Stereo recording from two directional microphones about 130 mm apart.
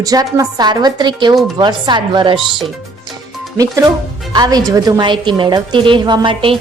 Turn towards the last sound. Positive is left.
turn(degrees=-40)  # may be behind; listen again after turning